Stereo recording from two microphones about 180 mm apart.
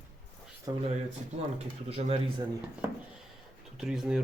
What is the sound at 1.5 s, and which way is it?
Speech, 35° right (ahead or behind).